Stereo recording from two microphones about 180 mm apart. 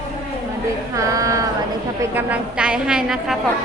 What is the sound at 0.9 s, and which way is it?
A woman's voice, 20° right (ahead or behind).